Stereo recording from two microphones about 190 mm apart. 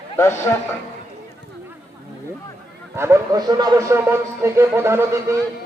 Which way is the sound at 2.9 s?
15° right (ahead or behind).